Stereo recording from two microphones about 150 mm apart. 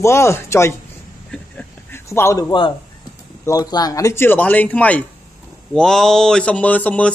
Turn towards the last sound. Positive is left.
turn(degrees=10)  # may be behind; listen again after turning